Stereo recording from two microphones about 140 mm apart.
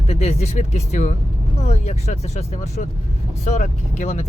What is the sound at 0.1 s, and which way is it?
Speech, 50° left (ahead or behind).